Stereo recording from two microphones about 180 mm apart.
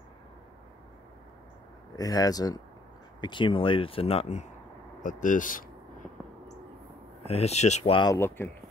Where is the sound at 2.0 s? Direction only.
20° left (ahead or behind); by 5.6 s 45° left (ahead or behind).